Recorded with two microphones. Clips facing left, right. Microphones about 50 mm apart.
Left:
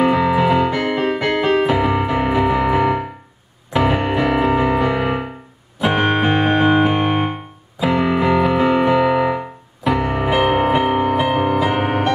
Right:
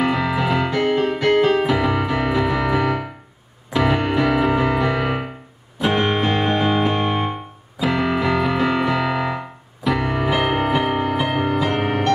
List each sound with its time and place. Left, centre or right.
0.0 s music: centre
0.7 s piano: centre
1.6 s music: centre
3.7 s music: centre; by 7.3 s left
7.8 s music: centre